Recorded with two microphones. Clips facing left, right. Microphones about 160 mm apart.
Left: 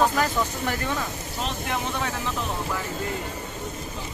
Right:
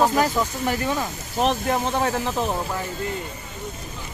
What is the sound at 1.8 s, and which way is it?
Speech, 45° right (ahead or behind).